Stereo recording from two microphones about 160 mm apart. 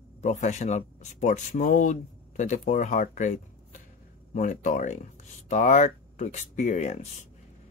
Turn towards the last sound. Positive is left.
turn(degrees=45)  # may be behind; listen again after turning